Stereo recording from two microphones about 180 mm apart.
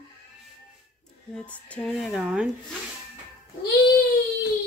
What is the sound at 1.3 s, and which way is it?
Speech, 5° left (ahead or behind).